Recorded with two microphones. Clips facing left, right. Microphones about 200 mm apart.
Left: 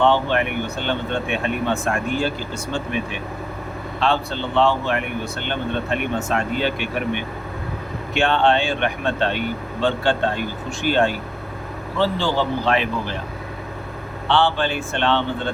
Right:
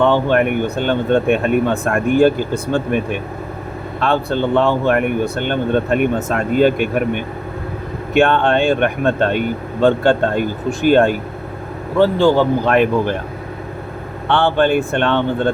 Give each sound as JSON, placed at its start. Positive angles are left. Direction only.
{"t": 0.0, "sound": "speech", "side_deg": -45}
{"t": 14.3, "sound": "speech", "side_deg": -55}